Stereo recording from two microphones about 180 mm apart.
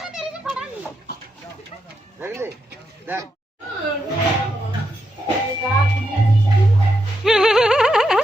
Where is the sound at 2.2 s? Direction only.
15° right (ahead or behind).